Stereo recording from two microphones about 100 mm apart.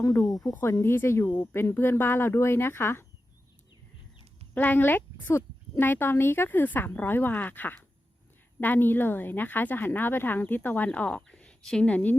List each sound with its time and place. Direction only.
0.0 s speech: 35° left (ahead or behind)
0.5 s speech: 25° left (ahead or behind)
4.5 s a woman's voice: 20° left (ahead or behind)